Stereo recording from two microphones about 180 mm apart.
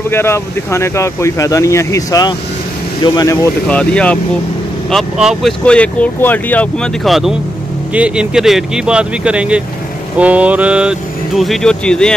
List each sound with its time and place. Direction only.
0.1 s speech: 15° left (ahead or behind)
3.6 s speech: 5° left (ahead or behind)